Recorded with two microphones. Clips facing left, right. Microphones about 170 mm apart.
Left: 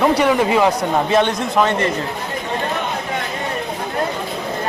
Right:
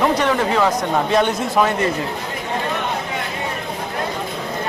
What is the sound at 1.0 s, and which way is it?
Speech, centre (ahead or behind).